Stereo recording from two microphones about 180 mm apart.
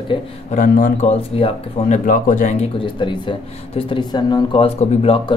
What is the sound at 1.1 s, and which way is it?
A man's voice, 30° left (ahead or behind).